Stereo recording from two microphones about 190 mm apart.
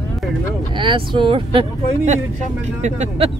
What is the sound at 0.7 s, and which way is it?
Speech, 25° right (ahead or behind).